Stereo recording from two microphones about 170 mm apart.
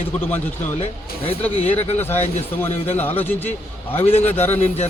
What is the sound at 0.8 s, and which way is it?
Speech, 35° left (ahead or behind).